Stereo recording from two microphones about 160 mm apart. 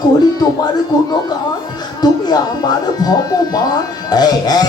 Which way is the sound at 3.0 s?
25° left (ahead or behind).